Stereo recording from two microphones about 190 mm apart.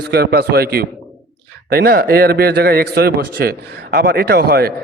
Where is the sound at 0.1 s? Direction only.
55° right (ahead or behind).